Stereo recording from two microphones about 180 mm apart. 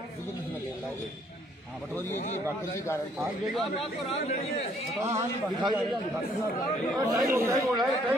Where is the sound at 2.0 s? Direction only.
40° left (ahead or behind).